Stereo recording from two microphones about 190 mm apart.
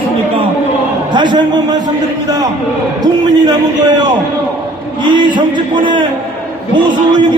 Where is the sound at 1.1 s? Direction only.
25° right (ahead or behind).